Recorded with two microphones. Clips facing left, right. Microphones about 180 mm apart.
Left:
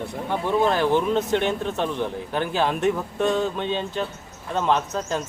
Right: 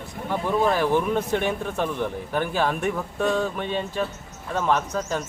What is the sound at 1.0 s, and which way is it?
Speech, 25° left (ahead or behind).